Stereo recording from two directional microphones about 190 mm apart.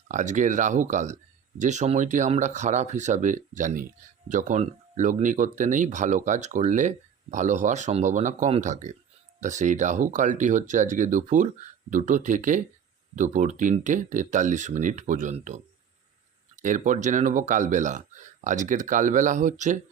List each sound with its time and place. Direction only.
0.1 s speech: 40° right (ahead or behind)